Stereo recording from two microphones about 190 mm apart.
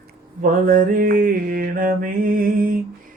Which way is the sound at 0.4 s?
45° right (ahead or behind).